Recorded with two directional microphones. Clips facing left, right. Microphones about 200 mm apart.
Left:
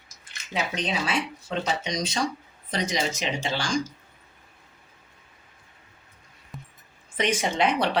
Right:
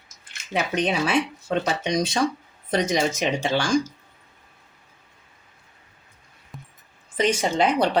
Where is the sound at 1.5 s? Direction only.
60° right (ahead or behind).